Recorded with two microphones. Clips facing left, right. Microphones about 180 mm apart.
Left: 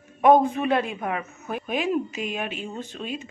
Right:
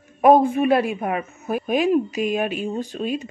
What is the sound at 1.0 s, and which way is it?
Speech, 20° right (ahead or behind).